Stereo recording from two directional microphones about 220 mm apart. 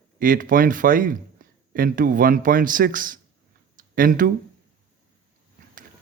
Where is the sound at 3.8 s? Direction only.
40° right (ahead or behind).